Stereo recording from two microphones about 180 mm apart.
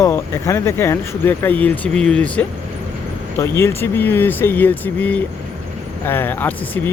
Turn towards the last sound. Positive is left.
turn(degrees=10)  # may be behind; listen again after turning